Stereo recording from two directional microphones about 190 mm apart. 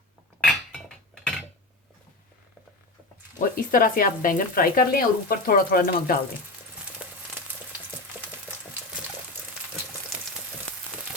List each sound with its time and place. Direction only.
0.4 s dishes: centre (ahead or behind)
3.3 s speech: 45° left (ahead or behind)